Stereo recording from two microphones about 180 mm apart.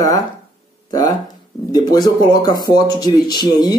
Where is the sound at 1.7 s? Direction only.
20° left (ahead or behind).